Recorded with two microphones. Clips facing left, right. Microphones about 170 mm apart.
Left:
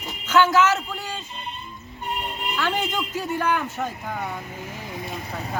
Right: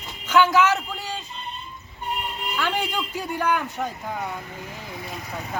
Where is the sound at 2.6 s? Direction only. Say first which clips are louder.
Left 1 dB; 10° right (ahead or behind).